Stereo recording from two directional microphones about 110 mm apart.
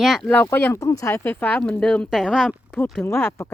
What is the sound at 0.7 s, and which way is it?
Speech, 35° left (ahead or behind).